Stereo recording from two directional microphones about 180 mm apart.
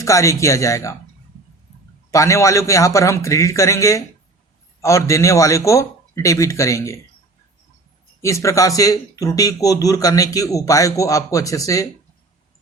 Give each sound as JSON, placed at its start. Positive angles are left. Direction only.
{"t": 0.0, "sound": "a man's voice", "side_deg": 15}
{"t": 2.0, "sound": "a man's voice", "side_deg": 15}
{"t": 8.2, "sound": "speech", "side_deg": 15}